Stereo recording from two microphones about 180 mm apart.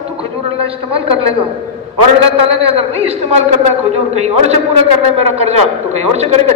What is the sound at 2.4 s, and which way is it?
A man's voice, 35° right (ahead or behind).